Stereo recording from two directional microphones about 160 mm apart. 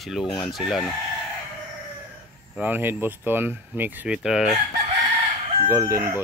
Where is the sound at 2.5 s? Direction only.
10° right (ahead or behind).